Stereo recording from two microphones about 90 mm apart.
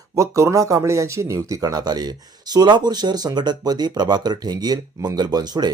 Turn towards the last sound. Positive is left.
turn(degrees=-50)  # may be behind; listen again after turning